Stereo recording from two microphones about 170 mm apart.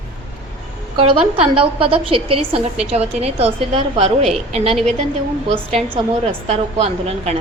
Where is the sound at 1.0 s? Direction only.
30° right (ahead or behind).